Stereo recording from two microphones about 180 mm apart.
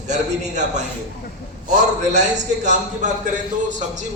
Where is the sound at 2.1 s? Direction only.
40° right (ahead or behind).